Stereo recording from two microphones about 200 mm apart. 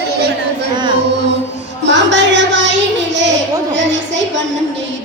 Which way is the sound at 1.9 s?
65° right (ahead or behind).